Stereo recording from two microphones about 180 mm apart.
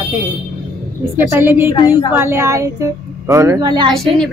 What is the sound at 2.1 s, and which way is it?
Speech, 15° right (ahead or behind).